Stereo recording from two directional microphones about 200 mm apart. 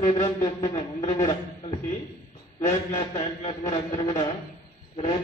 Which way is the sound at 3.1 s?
30° left (ahead or behind).